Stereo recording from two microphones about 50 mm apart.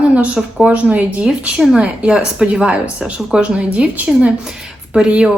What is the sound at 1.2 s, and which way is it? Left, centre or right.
A woman's voice, centre.